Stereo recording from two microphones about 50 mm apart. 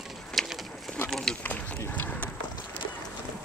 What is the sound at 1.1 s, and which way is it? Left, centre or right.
Speech, centre.